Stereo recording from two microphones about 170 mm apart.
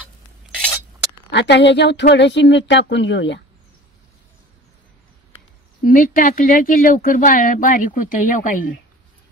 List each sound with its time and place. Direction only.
1.3 s a woman's voice: 90° left
5.9 s speech: 55° left (ahead or behind)